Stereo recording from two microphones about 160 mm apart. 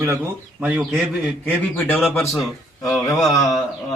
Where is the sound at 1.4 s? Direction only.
10° left (ahead or behind).